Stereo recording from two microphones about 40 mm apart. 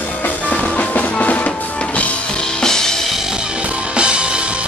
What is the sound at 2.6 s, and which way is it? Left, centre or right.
Music, centre.